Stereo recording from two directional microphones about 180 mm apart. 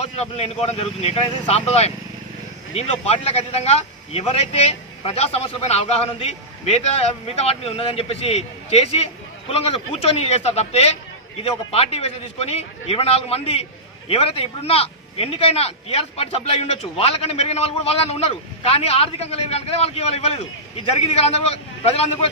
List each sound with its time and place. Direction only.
0.0 s a man's voice: 35° left (ahead or behind)